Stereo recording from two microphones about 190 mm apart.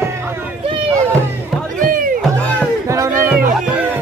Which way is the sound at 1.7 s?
45° right (ahead or behind).